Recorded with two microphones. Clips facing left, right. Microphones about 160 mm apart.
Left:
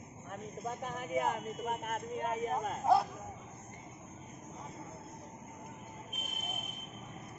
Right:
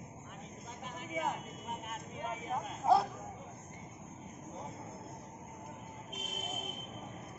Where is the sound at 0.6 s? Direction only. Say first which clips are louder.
Left 8 dB; 50° left (ahead or behind).